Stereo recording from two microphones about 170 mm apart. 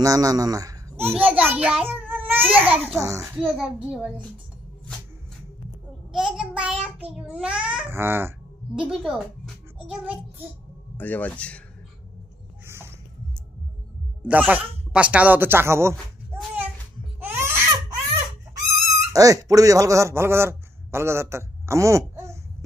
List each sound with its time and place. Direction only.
0.0 s a child's voice: 20° right (ahead or behind)
6.1 s child singing: 5° right (ahead or behind)
7.2 s a child's voice: 5° right (ahead or behind)
8.8 s speech: centre (ahead or behind)
11.0 s speech: 10° left (ahead or behind)
12.6 s a sound: 15° right (ahead or behind)
14.2 s a child's voice: 10° right (ahead or behind)
17.2 s baby cry: 15° right (ahead or behind)
19.1 s a man's voice: 20° right (ahead or behind)